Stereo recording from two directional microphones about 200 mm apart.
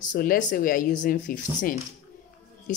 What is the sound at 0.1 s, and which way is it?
A woman's voice, 45° left (ahead or behind).